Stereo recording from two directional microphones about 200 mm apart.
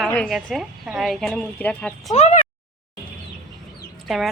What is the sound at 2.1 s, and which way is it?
Speech, 35° left (ahead or behind).